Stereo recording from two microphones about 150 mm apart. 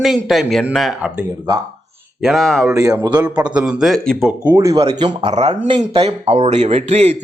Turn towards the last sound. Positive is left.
turn(degrees=-45)  # may be behind; listen again after turning